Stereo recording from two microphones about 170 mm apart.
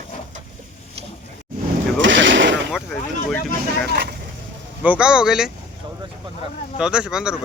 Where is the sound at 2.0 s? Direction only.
90° right.